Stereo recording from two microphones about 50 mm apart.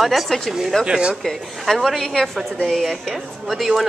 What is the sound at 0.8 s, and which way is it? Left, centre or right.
Speech, centre.